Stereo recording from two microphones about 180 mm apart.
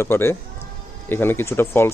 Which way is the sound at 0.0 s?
15° left (ahead or behind).